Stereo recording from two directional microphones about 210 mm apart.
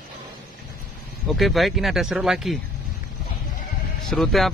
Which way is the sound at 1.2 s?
Centre (ahead or behind).